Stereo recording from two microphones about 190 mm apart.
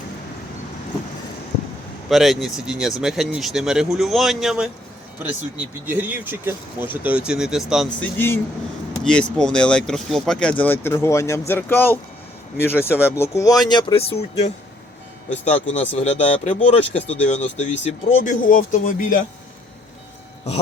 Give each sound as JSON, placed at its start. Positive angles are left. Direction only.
{"t": 2.0, "sound": "speech", "side_deg": 0}
{"t": 5.8, "sound": "speech", "side_deg": -10}
{"t": 7.9, "sound": "speech", "side_deg": 10}